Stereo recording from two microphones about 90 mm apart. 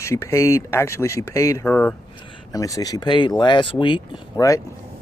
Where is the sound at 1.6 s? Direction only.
15° left (ahead or behind).